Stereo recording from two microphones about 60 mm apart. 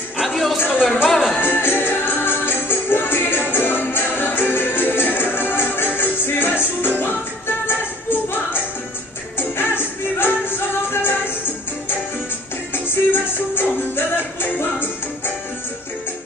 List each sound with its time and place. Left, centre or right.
0.2 s a sound: centre
1.0 s music: centre
1.4 s music: left
9.6 s music: left
12.8 s music: left